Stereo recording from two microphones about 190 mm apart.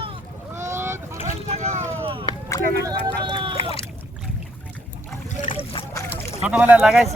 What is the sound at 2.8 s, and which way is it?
Speech, 25° right (ahead or behind).